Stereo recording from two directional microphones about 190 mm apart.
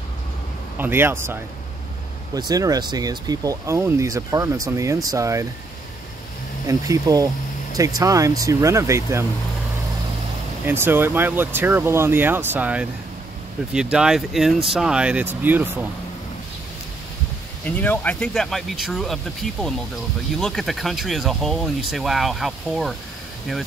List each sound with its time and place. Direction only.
0.7 s speech: 10° right (ahead or behind)
6.7 s speech: 20° right (ahead or behind)
10.6 s speech: 10° right (ahead or behind)
17.6 s speech: 10° left (ahead or behind)